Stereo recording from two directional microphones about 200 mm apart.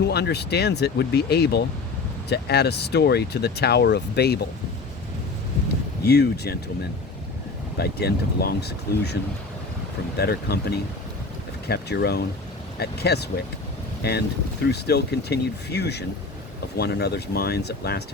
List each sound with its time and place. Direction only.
0.1 s speech: 55° left (ahead or behind)
6.1 s speech: 55° left (ahead or behind)
7.8 s speech: 50° left (ahead or behind)
10.2 s speech: 55° left (ahead or behind)